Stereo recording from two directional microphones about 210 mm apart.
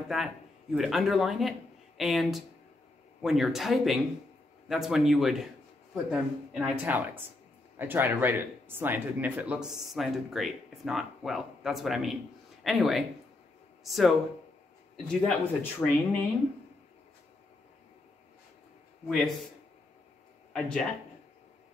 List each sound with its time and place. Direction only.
0.7 s speech: centre (ahead or behind)
19.0 s speech: centre (ahead or behind)
20.5 s speech: 5° left (ahead or behind)